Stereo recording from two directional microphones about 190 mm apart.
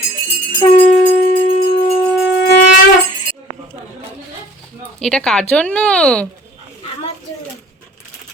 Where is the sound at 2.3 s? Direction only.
65° left (ahead or behind).